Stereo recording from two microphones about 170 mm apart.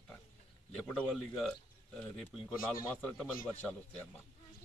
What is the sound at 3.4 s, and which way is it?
Speech, 10° left (ahead or behind).